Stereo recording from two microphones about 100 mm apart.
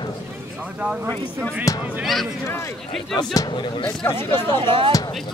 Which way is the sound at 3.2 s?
40° left (ahead or behind).